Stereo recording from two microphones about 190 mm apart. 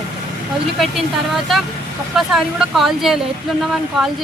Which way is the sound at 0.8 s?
Centre (ahead or behind).